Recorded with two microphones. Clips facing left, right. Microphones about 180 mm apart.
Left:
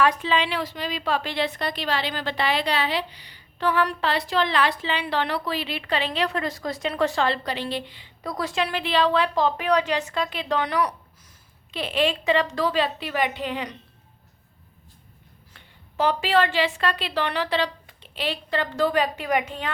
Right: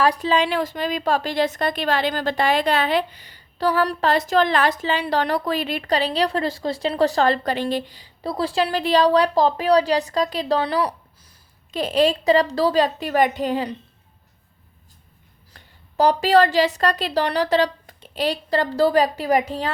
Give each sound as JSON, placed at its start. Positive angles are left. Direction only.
{"t": 0.0, "sound": "a woman's voice", "side_deg": -35}
{"t": 11.7, "sound": "a woman's voice", "side_deg": -40}
{"t": 15.5, "sound": "a woman's voice", "side_deg": -40}